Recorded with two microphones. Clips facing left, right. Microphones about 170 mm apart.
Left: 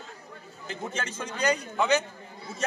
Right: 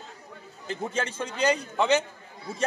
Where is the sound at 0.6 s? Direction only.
30° right (ahead or behind).